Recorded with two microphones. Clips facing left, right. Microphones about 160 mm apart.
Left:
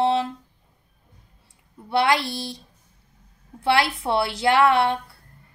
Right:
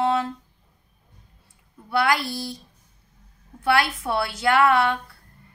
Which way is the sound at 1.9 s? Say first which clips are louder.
Left 2 dB; 25° left (ahead or behind).